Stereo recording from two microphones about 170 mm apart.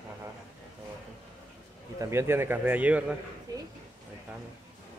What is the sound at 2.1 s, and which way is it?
A man's voice, 15° right (ahead or behind).